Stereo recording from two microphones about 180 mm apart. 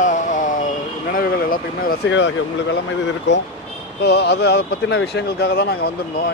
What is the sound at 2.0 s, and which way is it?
Speech, 85° left.